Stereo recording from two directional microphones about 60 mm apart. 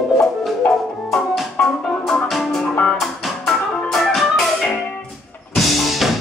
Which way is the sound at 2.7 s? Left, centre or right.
Centre.